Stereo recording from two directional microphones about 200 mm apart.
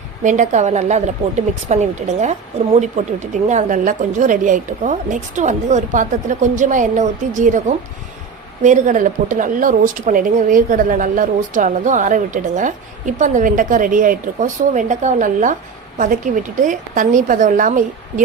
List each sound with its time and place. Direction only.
0.2 s a woman's voice: 40° right (ahead or behind)
8.6 s a woman's voice: 40° right (ahead or behind)